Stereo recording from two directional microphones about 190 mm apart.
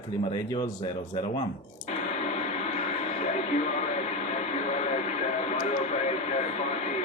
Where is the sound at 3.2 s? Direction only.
35° left (ahead or behind).